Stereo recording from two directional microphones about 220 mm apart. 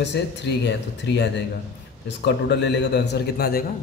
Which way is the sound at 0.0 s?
50° left (ahead or behind).